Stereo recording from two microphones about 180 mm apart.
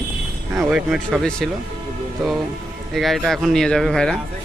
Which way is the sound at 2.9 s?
Centre (ahead or behind).